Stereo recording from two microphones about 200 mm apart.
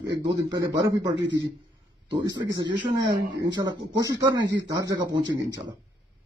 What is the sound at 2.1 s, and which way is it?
Speech, 20° right (ahead or behind).